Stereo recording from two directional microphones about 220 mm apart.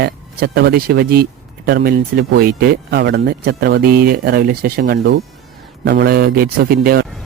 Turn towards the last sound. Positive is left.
turn(degrees=-45)  # may be behind; listen again after turning